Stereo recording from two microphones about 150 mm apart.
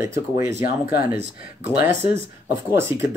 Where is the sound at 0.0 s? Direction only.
20° right (ahead or behind).